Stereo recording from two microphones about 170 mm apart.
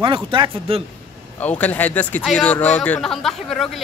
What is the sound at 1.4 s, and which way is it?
Speech, 10° left (ahead or behind).